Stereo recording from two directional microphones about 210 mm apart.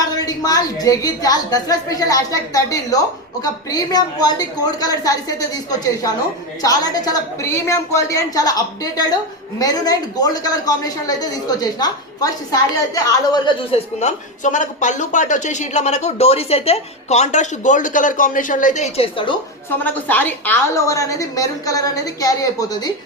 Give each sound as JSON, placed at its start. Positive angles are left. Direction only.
{"t": 0.2, "sound": "a woman's voice", "side_deg": 15}
{"t": 19.8, "sound": "a woman's voice", "side_deg": 10}